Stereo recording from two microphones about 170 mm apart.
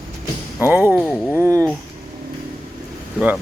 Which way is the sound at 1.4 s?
15° right (ahead or behind).